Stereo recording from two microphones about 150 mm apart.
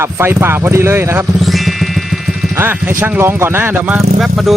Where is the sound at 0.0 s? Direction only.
15° right (ahead or behind).